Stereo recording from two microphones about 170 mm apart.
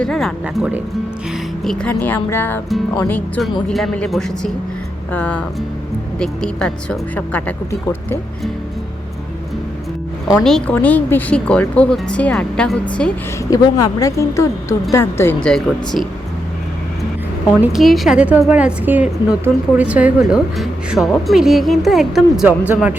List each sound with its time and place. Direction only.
0.0 s speech: 5° left (ahead or behind)
10.2 s speech: centre (ahead or behind)
13.5 s speech: 20° left (ahead or behind); by 16.0 s centre (ahead or behind)
17.6 s a woman's voice: centre (ahead or behind)